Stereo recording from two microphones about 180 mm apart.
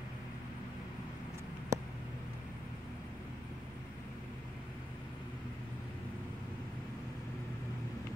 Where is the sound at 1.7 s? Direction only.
15° right (ahead or behind).